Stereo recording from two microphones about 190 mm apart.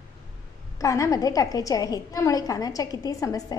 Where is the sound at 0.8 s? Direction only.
15° left (ahead or behind).